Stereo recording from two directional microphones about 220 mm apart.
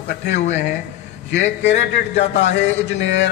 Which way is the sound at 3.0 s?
55° left (ahead or behind).